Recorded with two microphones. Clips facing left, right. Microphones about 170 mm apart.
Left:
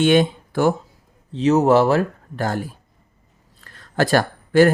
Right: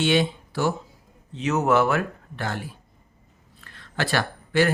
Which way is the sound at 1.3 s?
30° left (ahead or behind).